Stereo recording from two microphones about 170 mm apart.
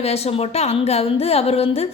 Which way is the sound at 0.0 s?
35° left (ahead or behind).